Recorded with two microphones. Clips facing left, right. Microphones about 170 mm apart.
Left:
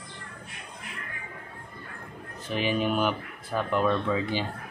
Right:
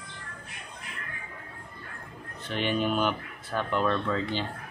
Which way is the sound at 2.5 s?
5° left (ahead or behind).